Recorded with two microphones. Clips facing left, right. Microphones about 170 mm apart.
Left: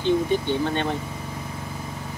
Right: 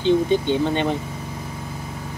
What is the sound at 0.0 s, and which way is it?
Speech, 20° right (ahead or behind).